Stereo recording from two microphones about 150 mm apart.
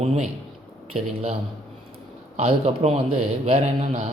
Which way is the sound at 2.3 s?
40° right (ahead or behind).